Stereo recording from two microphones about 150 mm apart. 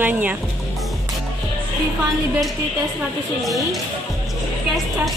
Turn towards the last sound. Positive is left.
turn(degrees=0)  # may be behind; listen again after turning